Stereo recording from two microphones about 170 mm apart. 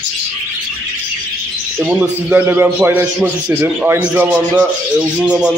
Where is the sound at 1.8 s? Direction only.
10° right (ahead or behind).